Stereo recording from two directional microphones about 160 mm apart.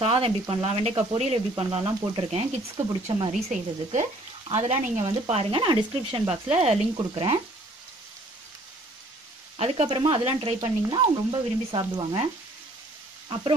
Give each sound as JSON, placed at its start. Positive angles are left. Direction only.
{"t": 0.0, "sound": "speech", "side_deg": -35}
{"t": 3.3, "sound": "speech", "side_deg": -45}
{"t": 9.6, "sound": "speech", "side_deg": -35}